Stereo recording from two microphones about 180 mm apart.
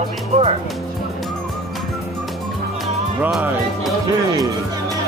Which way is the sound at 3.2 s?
5° right (ahead or behind).